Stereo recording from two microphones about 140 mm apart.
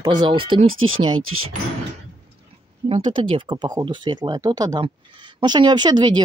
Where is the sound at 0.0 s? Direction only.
30° right (ahead or behind).